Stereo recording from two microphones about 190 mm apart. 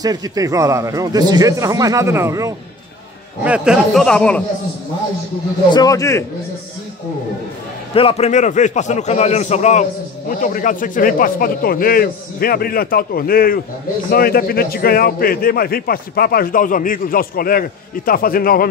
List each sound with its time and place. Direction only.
0.0 s speech: 20° right (ahead or behind)
3.4 s speech: 5° right (ahead or behind)
5.7 s a man's voice: 20° left (ahead or behind)
7.9 s a man's voice: 30° left (ahead or behind); by 18.7 s 50° left (ahead or behind)